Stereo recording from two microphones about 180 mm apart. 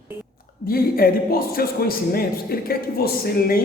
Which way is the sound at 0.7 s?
55° left (ahead or behind).